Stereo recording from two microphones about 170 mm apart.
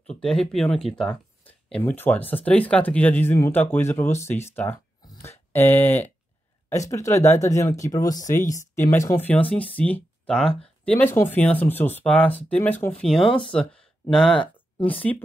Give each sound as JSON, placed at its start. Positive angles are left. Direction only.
{"t": 0.1, "sound": "speech", "side_deg": 5}